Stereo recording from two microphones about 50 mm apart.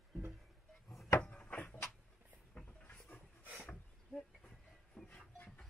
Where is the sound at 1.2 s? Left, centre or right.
Left.